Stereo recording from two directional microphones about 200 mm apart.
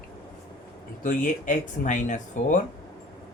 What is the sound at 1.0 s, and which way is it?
Speech, 40° left (ahead or behind).